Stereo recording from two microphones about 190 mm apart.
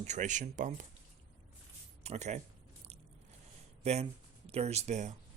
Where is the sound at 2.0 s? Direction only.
35° right (ahead or behind).